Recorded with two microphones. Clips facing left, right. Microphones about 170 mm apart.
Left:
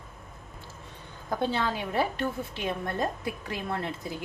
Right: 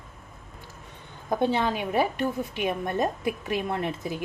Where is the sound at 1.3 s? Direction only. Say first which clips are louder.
Right 4 dB; 20° right (ahead or behind).